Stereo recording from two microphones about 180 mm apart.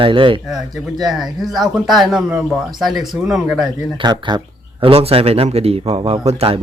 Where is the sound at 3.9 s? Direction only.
25° right (ahead or behind).